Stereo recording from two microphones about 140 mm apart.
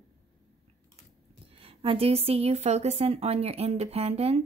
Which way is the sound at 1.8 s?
40° right (ahead or behind).